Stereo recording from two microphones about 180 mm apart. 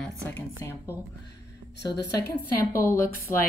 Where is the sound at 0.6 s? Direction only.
15° left (ahead or behind).